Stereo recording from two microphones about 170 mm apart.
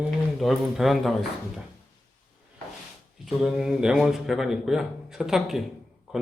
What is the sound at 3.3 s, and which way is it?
Speech, centre (ahead or behind).